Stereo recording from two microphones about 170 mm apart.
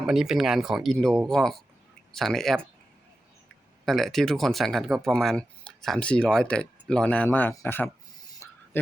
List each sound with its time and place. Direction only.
0.0 s speech: centre (ahead or behind)
3.8 s speech: centre (ahead or behind)